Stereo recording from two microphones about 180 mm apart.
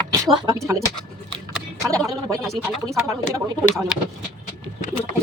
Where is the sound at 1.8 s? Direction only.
20° right (ahead or behind).